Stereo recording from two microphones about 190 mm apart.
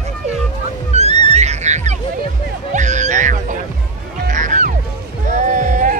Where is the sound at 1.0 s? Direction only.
35° right (ahead or behind).